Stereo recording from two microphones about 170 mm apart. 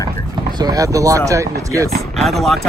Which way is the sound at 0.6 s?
20° right (ahead or behind).